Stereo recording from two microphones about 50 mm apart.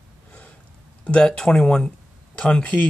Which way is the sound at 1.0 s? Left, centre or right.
Centre.